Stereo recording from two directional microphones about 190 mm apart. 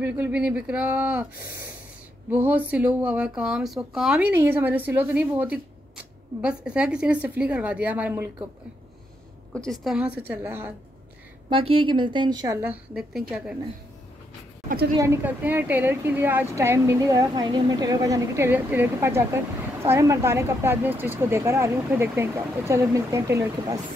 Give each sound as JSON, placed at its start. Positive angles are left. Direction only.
{"t": 0.0, "sound": "a woman's voice", "side_deg": -10}
{"t": 6.4, "sound": "a woman's voice", "side_deg": -5}
{"t": 9.5, "sound": "a woman's voice", "side_deg": 5}
{"t": 11.4, "sound": "a woman's voice", "side_deg": -30}
{"t": 12.6, "sound": "a woman's voice", "side_deg": -5}
{"t": 15.0, "sound": "a woman's voice", "side_deg": -10}